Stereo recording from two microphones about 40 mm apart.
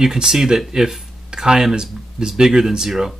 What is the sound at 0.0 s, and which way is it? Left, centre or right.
Speech, centre.